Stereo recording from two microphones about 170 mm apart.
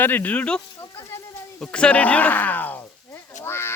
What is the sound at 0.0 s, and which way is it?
Speech, 10° left (ahead or behind).